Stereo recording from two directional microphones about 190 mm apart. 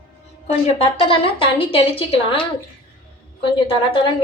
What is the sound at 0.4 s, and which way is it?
Speech, 35° left (ahead or behind).